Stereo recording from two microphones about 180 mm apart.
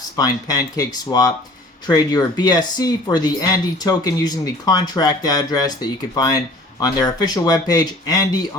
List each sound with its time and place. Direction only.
0.2 s speech: 20° left (ahead or behind)